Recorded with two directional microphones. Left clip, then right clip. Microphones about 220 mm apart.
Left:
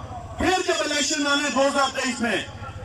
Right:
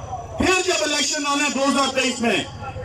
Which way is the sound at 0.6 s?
45° right (ahead or behind).